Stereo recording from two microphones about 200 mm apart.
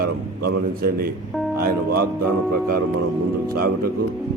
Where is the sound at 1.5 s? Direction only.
50° right (ahead or behind).